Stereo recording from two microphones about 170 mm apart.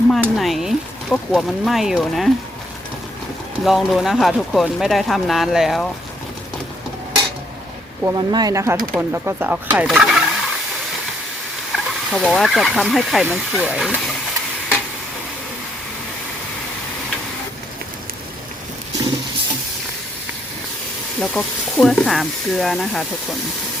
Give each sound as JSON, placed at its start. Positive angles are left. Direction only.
{"t": 0.1, "sound": "speech", "side_deg": 0}
{"t": 3.6, "sound": "speech", "side_deg": 0}
{"t": 8.0, "sound": "speech", "side_deg": -25}
{"t": 11.7, "sound": "speech", "side_deg": 0}
{"t": 21.2, "sound": "speech", "side_deg": 0}